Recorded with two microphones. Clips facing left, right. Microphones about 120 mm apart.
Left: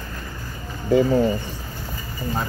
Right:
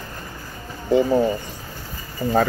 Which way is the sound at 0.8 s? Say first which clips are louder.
Even; 20° right (ahead or behind).